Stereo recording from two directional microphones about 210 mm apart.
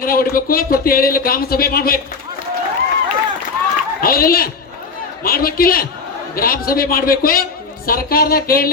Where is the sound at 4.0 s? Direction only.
45° left (ahead or behind).